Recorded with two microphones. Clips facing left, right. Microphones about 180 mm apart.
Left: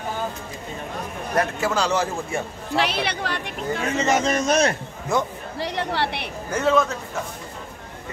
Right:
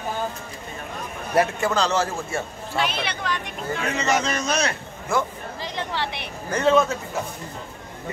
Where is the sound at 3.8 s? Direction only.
25° left (ahead or behind).